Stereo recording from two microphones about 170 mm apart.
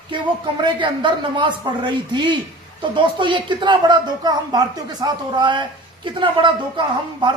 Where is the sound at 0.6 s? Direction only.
30° right (ahead or behind).